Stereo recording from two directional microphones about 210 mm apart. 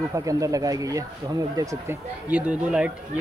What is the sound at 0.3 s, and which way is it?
Speech, 15° right (ahead or behind).